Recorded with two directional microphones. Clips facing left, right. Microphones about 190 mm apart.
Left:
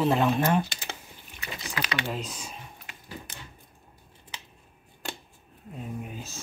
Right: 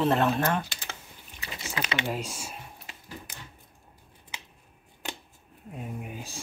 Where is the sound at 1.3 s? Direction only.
25° right (ahead or behind).